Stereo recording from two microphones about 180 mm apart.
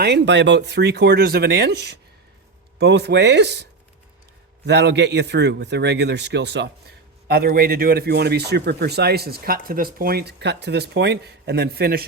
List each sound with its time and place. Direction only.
0.0 s a man's voice: 70° right (ahead or behind)
7.3 s speech: 60° right (ahead or behind)